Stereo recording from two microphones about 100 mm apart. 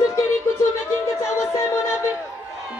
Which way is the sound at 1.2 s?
25° left (ahead or behind).